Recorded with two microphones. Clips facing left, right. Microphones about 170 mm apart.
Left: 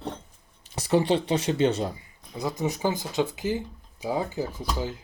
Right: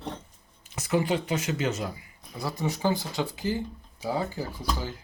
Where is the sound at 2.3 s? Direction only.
20° left (ahead or behind).